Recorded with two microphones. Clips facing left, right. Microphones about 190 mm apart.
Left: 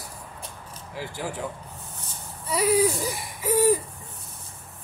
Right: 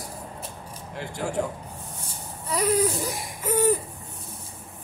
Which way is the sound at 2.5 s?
5° left (ahead or behind).